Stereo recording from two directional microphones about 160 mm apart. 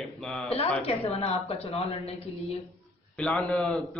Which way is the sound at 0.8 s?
40° left (ahead or behind).